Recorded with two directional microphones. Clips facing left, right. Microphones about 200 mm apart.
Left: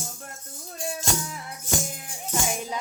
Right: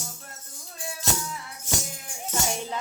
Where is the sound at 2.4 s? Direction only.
10° left (ahead or behind).